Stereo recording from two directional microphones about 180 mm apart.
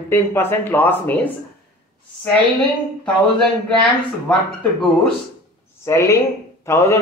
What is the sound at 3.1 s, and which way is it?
Speech, centre (ahead or behind).